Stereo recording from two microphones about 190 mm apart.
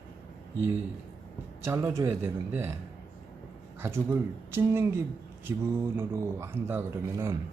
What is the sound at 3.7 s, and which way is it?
Speech, 10° right (ahead or behind).